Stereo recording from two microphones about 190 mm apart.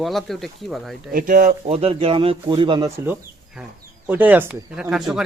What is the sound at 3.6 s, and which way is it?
Speech, 5° right (ahead or behind).